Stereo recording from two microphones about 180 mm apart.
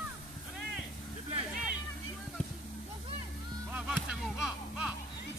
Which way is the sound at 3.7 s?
5° right (ahead or behind).